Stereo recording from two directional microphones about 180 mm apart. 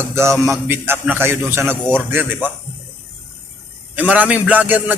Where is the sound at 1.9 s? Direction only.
10° right (ahead or behind).